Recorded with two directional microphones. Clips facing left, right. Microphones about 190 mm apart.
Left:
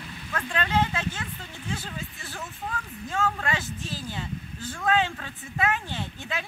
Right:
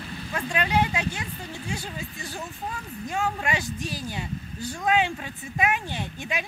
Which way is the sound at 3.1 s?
15° right (ahead or behind).